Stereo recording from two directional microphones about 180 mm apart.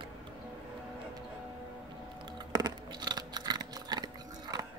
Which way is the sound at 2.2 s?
25° right (ahead or behind).